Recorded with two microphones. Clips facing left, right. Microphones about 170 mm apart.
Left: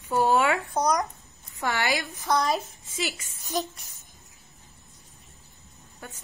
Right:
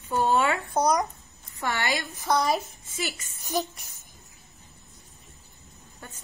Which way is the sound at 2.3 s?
5° right (ahead or behind).